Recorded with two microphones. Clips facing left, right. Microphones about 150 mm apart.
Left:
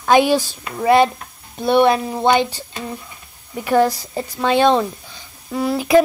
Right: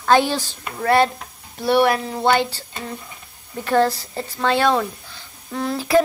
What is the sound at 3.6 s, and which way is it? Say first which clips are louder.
A woman's voice: left 2 dB; 15° left (ahead or behind).